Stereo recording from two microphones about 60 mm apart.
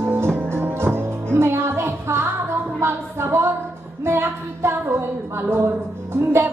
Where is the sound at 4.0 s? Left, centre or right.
Right.